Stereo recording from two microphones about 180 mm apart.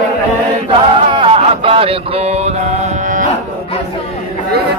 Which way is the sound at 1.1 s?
30° right (ahead or behind).